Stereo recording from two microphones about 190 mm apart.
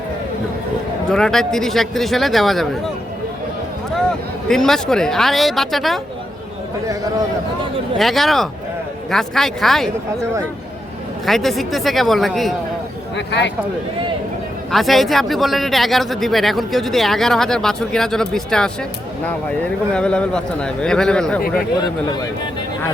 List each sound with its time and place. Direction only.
1.1 s speech: 5° left (ahead or behind)
4.4 s speech: centre (ahead or behind)
7.9 s speech: centre (ahead or behind)
11.3 s speech: centre (ahead or behind)
13.1 s speech: 65° left (ahead or behind)
14.7 s speech: centre (ahead or behind)
19.9 s speech: 5° left (ahead or behind)